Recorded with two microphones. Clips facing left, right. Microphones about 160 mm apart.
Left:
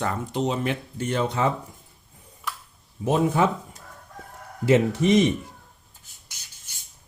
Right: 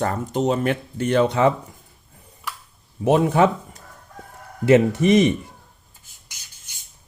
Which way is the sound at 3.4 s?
80° right.